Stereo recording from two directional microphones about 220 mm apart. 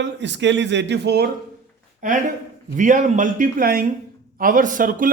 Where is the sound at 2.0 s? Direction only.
40° right (ahead or behind).